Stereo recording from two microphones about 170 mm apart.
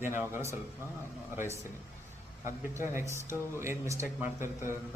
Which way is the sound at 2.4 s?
15° right (ahead or behind).